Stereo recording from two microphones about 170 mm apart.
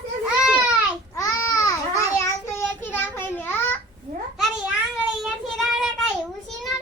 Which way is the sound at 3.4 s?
10° left (ahead or behind).